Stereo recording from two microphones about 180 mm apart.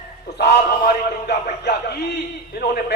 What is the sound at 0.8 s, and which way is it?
A man's voice, 60° left (ahead or behind).